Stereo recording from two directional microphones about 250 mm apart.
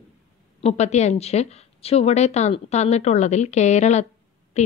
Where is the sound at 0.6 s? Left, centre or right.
Left.